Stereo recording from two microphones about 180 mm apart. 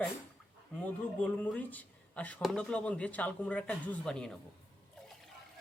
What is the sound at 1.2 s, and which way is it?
A man's voice, 10° left (ahead or behind).